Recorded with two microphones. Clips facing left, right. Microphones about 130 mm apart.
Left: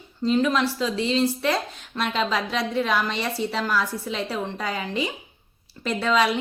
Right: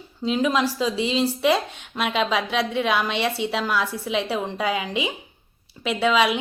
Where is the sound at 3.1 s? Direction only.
80° right.